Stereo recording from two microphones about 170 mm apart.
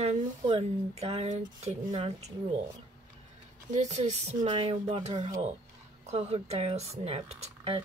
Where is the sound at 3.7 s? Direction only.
40° right (ahead or behind).